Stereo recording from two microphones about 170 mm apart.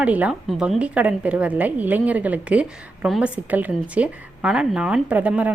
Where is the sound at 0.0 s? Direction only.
10° right (ahead or behind).